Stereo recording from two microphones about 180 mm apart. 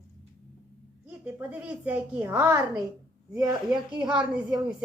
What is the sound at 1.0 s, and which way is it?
A woman's voice, 10° right (ahead or behind).